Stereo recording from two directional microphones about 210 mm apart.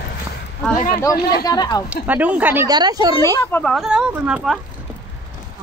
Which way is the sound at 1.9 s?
5° right (ahead or behind).